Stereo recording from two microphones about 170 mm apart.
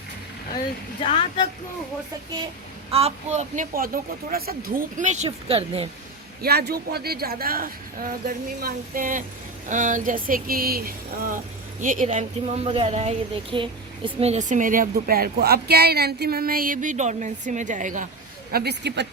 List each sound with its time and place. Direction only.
2.9 s a woman's voice: 40° right (ahead or behind)
6.4 s a woman's voice: 70° right (ahead or behind); by 18.1 s 50° right (ahead or behind)
18.5 s a woman's voice: 75° right (ahead or behind)